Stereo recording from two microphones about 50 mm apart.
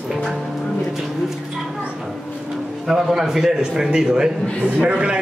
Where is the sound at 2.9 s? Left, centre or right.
Centre.